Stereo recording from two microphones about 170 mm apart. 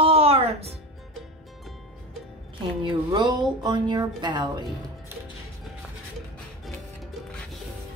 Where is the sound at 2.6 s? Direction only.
30° right (ahead or behind).